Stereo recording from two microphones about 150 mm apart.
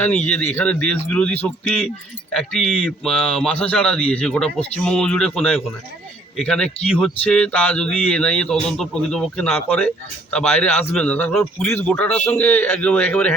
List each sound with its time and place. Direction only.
0.0 s speech: 10° left (ahead or behind)